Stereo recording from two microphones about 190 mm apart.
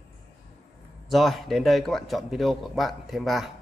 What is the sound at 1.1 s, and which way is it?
A man's voice, centre (ahead or behind).